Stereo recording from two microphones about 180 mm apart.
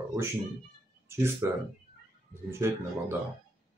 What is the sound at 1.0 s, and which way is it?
Speech, 15° right (ahead or behind).